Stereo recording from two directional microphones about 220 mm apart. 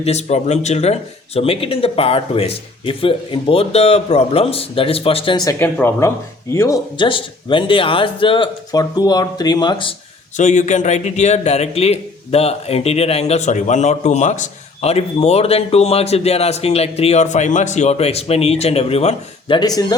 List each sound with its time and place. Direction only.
0.0 s a man's voice: 30° left (ahead or behind)
5.5 s a man's voice: 10° left (ahead or behind)
10.3 s a man's voice: 35° left (ahead or behind); by 20.0 s 15° left (ahead or behind)